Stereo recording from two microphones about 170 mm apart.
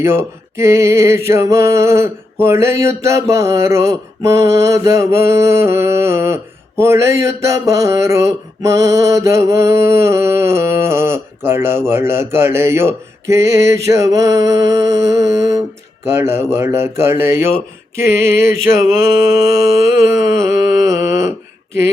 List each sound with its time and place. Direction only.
0.0 s male singing: 15° right (ahead or behind)
17.9 s mantra: 15° right (ahead or behind)